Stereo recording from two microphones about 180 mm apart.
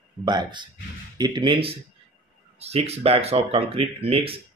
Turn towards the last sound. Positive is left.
turn(degrees=-30)  # may be behind; listen again after turning